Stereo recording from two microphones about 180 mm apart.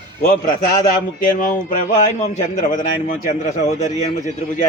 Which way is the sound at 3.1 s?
40° left (ahead or behind).